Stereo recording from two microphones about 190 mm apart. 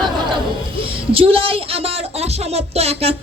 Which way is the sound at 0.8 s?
30° right (ahead or behind).